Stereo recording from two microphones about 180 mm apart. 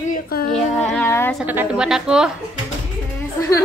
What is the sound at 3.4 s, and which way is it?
Speech, 20° left (ahead or behind).